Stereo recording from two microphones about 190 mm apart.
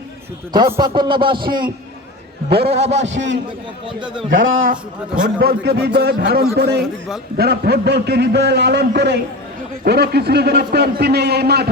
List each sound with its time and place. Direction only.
0.5 s a man's voice: 20° right (ahead or behind)
2.5 s a man's voice: 60° right (ahead or behind)
2.9 s a man's voice: 70° right (ahead or behind)
4.4 s speech: 90° right
5.6 s a man's voice: 60° right (ahead or behind)